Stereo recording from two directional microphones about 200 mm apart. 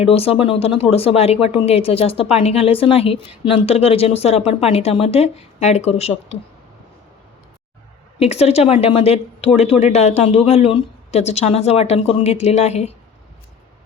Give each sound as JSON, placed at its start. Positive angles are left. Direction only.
{"t": 0.0, "sound": "a woman's voice", "side_deg": 30}
{"t": 8.2, "sound": "a woman's voice", "side_deg": 30}